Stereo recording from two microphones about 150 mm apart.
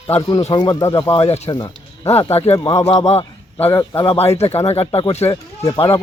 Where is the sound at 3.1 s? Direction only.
40° left (ahead or behind).